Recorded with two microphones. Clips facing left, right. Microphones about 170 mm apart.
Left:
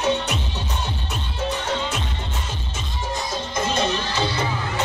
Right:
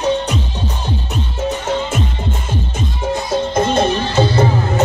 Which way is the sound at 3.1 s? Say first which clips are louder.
Right 10 dB; 55° right (ahead or behind).